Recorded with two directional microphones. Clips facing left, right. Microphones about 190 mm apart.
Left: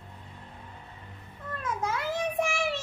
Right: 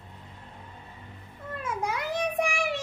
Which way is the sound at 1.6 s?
15° right (ahead or behind).